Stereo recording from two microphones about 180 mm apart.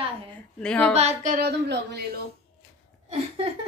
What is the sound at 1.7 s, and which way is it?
Speech, 65° right (ahead or behind).